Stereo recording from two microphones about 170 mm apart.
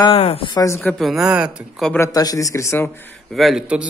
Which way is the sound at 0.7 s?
Centre (ahead or behind).